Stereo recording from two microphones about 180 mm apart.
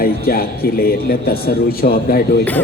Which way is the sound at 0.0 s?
55° left (ahead or behind).